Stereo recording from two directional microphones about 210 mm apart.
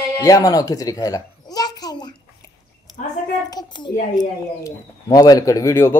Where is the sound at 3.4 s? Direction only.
20° left (ahead or behind).